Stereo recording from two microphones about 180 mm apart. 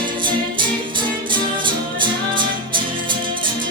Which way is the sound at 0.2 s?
25° right (ahead or behind).